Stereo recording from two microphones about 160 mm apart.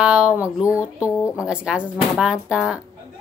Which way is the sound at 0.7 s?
20° left (ahead or behind).